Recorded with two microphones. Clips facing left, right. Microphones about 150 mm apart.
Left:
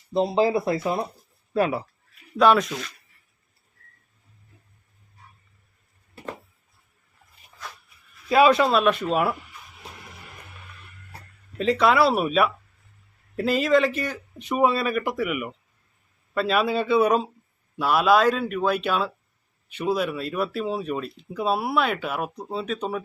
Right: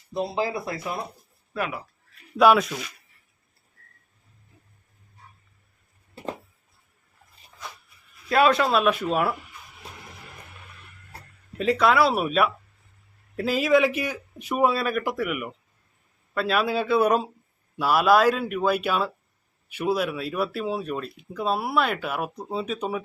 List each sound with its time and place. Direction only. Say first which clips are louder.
0.1 s speech: left 6 dB; 25° left (ahead or behind)
2.4 s speech: even; 5° right (ahead or behind)
8.3 s speech: left 2 dB; centre (ahead or behind)
11.1 s speech: right 3 dB; 5° right (ahead or behind)